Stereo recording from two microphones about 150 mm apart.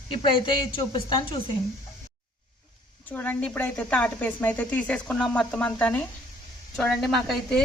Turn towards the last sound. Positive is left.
turn(degrees=0)  # may be behind; listen again after turning